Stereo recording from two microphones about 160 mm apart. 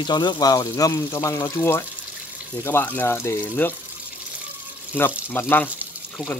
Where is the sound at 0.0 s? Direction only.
25° left (ahead or behind).